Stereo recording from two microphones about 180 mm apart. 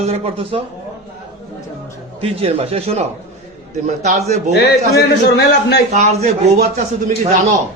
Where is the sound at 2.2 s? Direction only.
35° right (ahead or behind).